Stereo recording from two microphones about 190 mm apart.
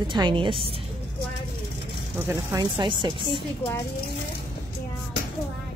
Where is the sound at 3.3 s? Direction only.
15° left (ahead or behind).